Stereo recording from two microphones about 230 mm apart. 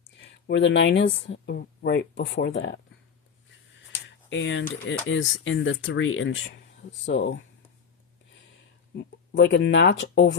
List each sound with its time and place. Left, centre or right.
0.4 s speech: left
4.3 s speech: left
9.0 s speech: left